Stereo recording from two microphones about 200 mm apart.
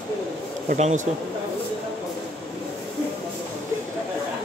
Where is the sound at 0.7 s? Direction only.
40° right (ahead or behind).